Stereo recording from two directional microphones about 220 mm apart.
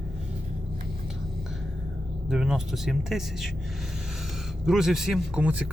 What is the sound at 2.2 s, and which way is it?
Speech, centre (ahead or behind).